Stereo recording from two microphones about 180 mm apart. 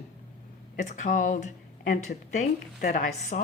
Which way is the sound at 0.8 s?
45° left (ahead or behind).